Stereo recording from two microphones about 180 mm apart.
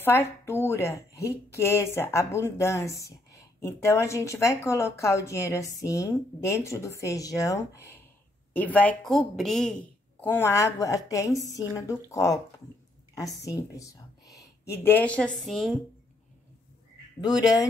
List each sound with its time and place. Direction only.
0.0 s a woman's voice: 10° left (ahead or behind)
13.5 s a sound: 20° left (ahead or behind)
14.8 s a woman's voice: 10° left (ahead or behind)
17.2 s speech: 20° left (ahead or behind)